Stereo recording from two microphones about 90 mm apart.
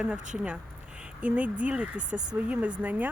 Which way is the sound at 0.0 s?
10° right (ahead or behind).